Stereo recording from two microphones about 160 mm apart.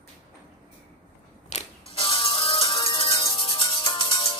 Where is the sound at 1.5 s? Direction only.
35° left (ahead or behind).